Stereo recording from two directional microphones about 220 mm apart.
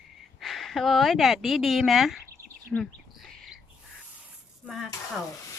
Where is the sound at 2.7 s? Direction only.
Centre (ahead or behind).